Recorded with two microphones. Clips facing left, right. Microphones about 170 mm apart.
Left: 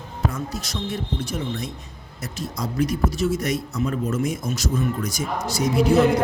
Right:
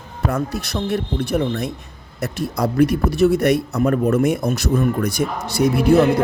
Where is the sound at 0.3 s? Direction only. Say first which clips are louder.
Right 8 dB; 60° right (ahead or behind).